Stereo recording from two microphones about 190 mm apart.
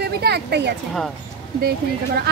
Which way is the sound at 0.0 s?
60° right (ahead or behind).